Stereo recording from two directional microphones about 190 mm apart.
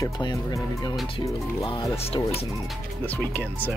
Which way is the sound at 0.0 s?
20° left (ahead or behind).